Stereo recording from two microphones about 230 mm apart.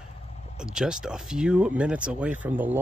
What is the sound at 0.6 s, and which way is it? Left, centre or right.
Speech, centre.